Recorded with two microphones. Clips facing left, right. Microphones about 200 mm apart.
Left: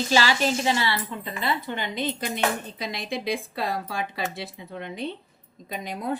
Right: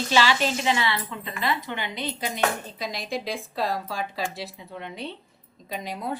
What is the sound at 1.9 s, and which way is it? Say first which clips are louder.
Speech: left 3 dB; 45° left (ahead or behind).